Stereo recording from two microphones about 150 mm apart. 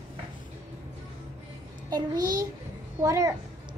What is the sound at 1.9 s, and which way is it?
A child's voice, 25° right (ahead or behind).